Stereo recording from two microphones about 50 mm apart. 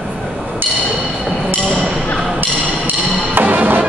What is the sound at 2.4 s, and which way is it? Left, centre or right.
Music, right.